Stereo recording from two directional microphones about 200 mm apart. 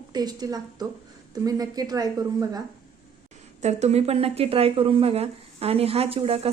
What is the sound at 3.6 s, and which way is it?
Speech, 35° right (ahead or behind).